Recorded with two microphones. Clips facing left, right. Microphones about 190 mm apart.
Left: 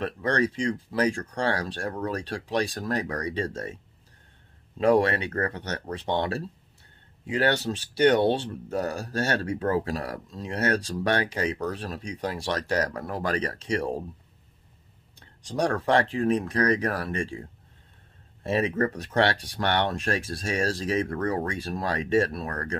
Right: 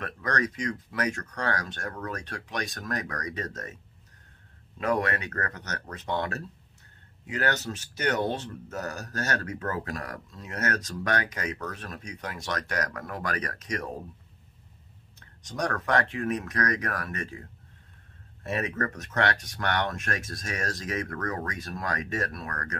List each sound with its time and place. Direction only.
0.0 s speech: 30° left (ahead or behind)
4.7 s speech: 30° left (ahead or behind)
15.1 s speech: 30° left (ahead or behind)